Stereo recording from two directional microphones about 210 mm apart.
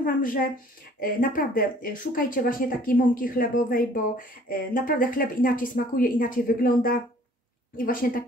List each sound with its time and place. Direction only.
0.0 s a woman's voice: 40° left (ahead or behind)